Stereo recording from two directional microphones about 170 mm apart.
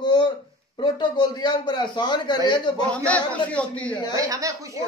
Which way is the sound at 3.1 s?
10° left (ahead or behind).